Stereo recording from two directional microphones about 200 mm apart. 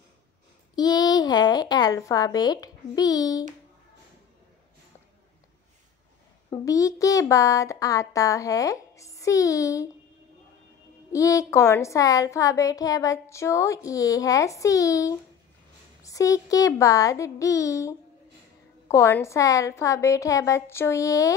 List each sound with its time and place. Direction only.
0.7 s a child's voice: 20° left (ahead or behind)
6.5 s a child's voice: 15° left (ahead or behind)
11.1 s a child's voice: 15° left (ahead or behind)